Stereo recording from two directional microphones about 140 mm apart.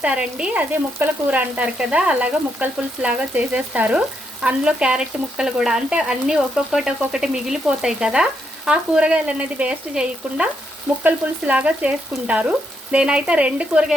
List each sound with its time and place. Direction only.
0.0 s frying: 10° right (ahead or behind)
4.4 s speech: 5° right (ahead or behind)
11.0 s frying: 10° right (ahead or behind)